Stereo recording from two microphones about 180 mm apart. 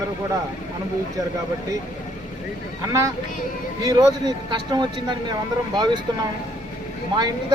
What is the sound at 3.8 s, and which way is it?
Speech, 20° right (ahead or behind).